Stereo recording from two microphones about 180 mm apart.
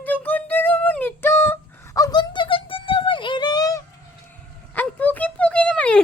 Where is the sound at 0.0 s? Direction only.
10° left (ahead or behind).